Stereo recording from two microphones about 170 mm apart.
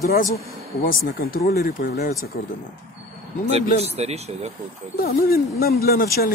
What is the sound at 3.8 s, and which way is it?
Speech, 40° right (ahead or behind).